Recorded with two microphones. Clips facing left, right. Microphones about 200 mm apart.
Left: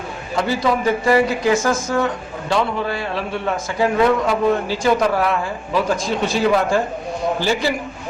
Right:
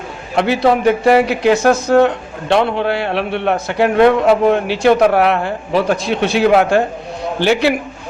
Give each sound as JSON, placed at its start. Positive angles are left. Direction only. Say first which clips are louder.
{"t": 0.3, "sound": "speech", "louder": "right 6 dB", "side_deg": -65}